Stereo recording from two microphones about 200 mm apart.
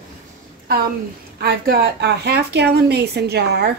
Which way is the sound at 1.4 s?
55° right (ahead or behind).